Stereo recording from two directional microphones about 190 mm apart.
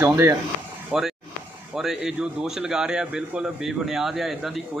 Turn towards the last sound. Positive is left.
turn(degrees=0)  # may be behind; listen again after turning